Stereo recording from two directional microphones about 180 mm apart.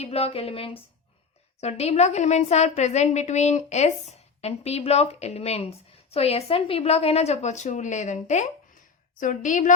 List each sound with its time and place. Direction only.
0.0 s a woman's voice: 35° left (ahead or behind)